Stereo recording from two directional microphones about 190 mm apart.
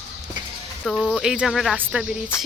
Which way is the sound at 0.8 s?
Centre (ahead or behind).